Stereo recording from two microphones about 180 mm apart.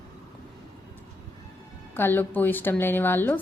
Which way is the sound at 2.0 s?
10° left (ahead or behind).